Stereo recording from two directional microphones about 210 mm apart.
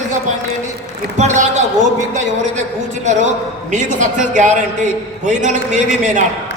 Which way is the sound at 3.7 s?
35° right (ahead or behind).